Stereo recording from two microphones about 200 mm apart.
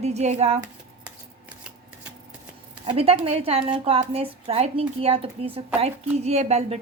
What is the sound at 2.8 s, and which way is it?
A woman's voice, 30° right (ahead or behind).